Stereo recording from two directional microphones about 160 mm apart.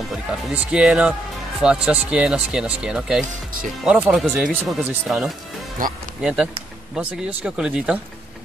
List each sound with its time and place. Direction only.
0.7 s speech: 5° right (ahead or behind)
5.8 s speech: 60° right (ahead or behind)
6.2 s speech: 5° right (ahead or behind)